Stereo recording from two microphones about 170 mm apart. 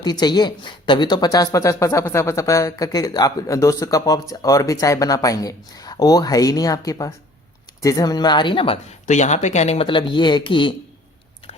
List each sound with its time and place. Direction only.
0.0 s speech: 25° left (ahead or behind)